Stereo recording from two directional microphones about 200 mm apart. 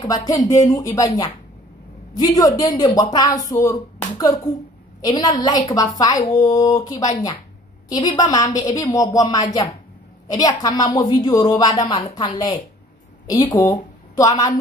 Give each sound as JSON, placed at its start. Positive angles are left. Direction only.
{"t": 0.0, "sound": "a woman's voice", "side_deg": 15}